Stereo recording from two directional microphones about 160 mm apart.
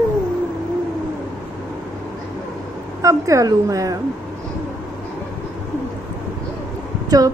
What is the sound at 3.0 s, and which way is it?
Speech, 20° right (ahead or behind).